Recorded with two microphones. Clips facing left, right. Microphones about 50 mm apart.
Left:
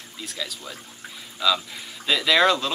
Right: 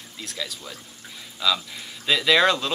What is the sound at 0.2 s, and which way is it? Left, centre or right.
Speech, centre.